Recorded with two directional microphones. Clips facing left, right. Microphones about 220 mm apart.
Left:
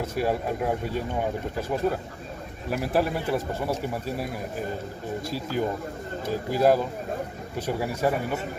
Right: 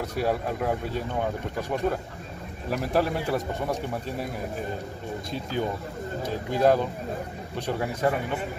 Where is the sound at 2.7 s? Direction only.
Centre (ahead or behind).